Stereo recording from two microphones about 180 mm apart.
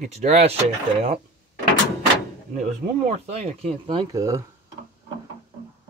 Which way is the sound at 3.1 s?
35° right (ahead or behind).